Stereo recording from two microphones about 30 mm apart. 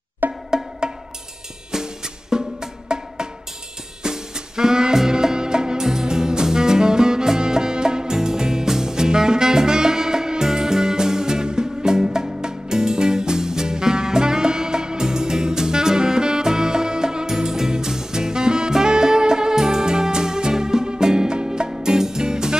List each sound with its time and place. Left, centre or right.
0.2 s music: right
1.7 s music: centre
2.9 s drum: right
4.0 s music: right